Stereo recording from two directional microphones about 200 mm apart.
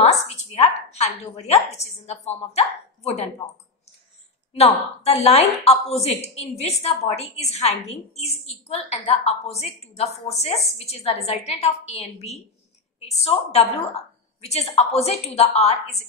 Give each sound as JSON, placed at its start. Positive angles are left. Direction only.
{"t": 0.0, "sound": "a woman's voice", "side_deg": 30}
{"t": 4.6, "sound": "a woman's voice", "side_deg": 30}